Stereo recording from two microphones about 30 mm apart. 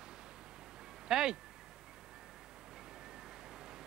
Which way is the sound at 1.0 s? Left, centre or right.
Right.